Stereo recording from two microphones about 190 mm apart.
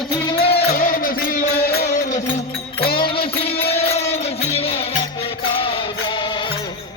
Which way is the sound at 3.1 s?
30° left (ahead or behind).